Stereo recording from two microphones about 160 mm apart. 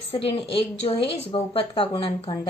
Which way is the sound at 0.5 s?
35° left (ahead or behind).